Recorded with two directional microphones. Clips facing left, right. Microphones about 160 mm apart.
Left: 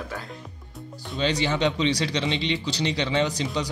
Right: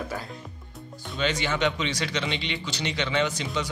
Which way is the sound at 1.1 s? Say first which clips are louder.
Left 3 dB; 30° left (ahead or behind).